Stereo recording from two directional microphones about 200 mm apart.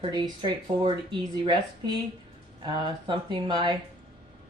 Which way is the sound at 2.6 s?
25° right (ahead or behind).